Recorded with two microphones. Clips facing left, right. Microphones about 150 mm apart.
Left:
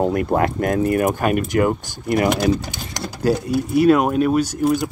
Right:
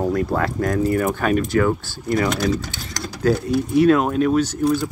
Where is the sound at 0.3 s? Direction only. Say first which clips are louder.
Left 2 dB; 20° left (ahead or behind).